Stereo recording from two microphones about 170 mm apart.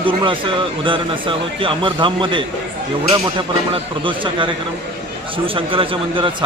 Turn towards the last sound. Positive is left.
turn(degrees=-30)  # may be behind; listen again after turning